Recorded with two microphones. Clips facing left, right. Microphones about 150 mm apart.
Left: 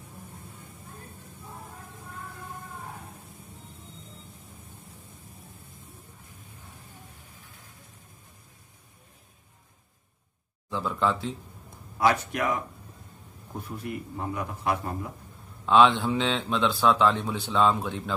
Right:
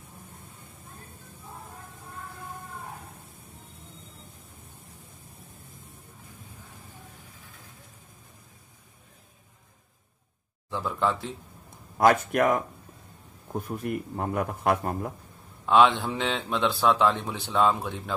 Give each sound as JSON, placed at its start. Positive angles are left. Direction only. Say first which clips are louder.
{"t": 10.7, "sound": "speech", "louder": "even", "side_deg": -15}
{"t": 12.0, "sound": "a man's voice", "louder": "right 4 dB", "side_deg": -50}
{"t": 15.6, "sound": "speech", "louder": "even", "side_deg": -15}